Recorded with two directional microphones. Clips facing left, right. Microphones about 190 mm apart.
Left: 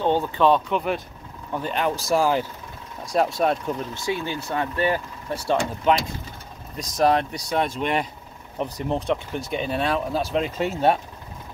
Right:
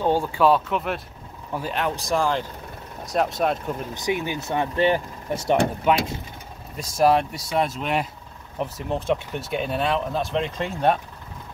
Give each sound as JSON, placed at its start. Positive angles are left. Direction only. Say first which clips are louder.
{"t": 0.0, "sound": "speech", "louder": "even", "side_deg": -10}
{"t": 3.9, "sound": "speech", "louder": "right 1 dB", "side_deg": -20}
{"t": 6.8, "sound": "speech", "louder": "right 1 dB", "side_deg": -5}